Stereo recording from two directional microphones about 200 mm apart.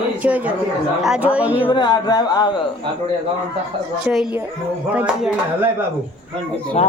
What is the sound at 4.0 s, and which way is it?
A child's voice, centre (ahead or behind).